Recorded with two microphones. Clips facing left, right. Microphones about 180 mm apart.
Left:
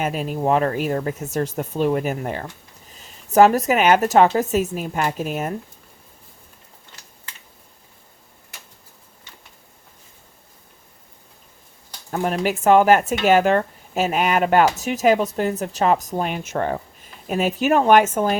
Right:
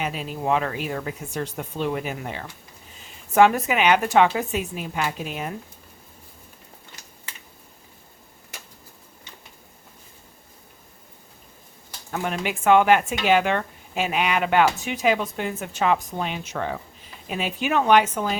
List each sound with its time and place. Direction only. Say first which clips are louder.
0.0 s speech: left 5 dB; 45° left (ahead or behind)
12.1 s speech: left 5 dB; 40° left (ahead or behind)